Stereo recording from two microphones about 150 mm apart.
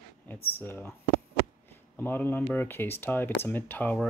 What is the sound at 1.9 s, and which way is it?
Speech, 15° left (ahead or behind).